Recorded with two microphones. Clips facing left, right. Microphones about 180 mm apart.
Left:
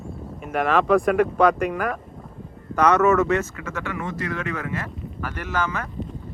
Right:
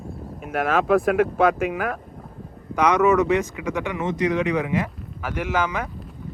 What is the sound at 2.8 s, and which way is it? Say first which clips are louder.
Speech: even; 15° right (ahead or behind).